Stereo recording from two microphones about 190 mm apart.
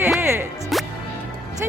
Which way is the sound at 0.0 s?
10° right (ahead or behind).